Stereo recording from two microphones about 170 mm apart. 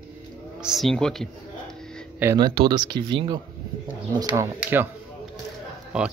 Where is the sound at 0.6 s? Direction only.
Centre (ahead or behind).